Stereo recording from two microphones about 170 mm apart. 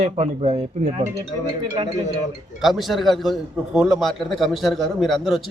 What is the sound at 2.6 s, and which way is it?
A man's voice, centre (ahead or behind).